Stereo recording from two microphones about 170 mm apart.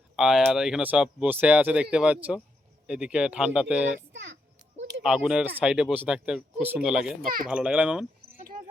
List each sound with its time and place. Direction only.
0.2 s speech: centre (ahead or behind)
4.1 s a sound: 90° right
5.0 s speech: 5° right (ahead or behind)
8.4 s music: 55° right (ahead or behind)